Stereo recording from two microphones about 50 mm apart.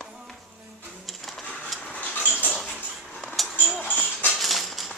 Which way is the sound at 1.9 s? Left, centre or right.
Left.